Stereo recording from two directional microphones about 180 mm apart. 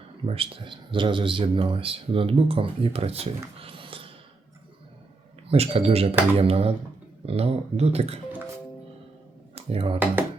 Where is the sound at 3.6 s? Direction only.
30° right (ahead or behind).